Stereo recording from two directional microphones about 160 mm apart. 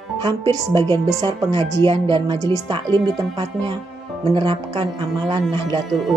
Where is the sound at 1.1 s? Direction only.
25° right (ahead or behind).